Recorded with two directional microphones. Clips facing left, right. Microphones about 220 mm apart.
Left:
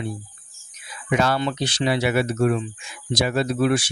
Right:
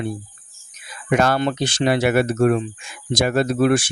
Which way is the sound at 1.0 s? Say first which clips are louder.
Right 3 dB; 50° right (ahead or behind).